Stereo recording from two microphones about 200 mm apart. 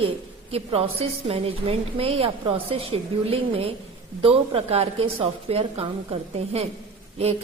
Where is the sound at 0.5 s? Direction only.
30° right (ahead or behind).